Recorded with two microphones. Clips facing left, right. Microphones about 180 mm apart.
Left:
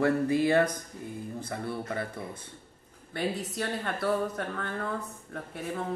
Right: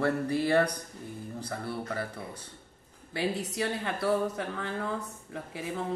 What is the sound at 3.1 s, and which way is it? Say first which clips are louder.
Speech: even; centre (ahead or behind).